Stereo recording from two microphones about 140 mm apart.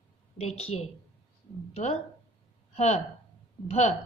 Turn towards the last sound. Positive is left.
turn(degrees=50)  # may be behind; listen again after turning